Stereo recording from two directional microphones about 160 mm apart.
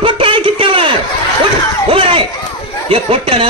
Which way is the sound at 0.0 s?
35° right (ahead or behind).